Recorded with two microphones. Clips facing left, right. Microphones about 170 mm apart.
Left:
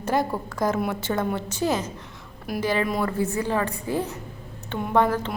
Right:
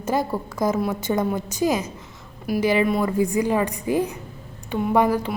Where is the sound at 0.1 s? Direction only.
10° right (ahead or behind).